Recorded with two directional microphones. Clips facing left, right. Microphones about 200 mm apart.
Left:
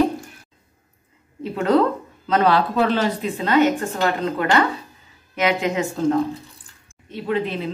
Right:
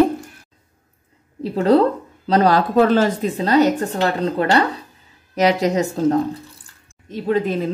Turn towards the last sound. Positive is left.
turn(degrees=-45)  # may be behind; listen again after turning